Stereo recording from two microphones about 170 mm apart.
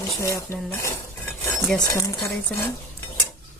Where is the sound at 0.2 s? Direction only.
15° left (ahead or behind).